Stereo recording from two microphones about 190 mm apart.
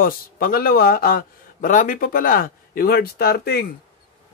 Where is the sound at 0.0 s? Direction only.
50° left (ahead or behind).